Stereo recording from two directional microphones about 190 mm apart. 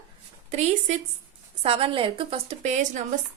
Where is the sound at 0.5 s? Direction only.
35° right (ahead or behind).